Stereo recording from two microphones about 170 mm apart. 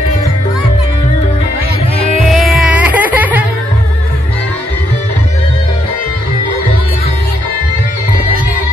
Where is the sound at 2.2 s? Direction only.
Centre (ahead or behind).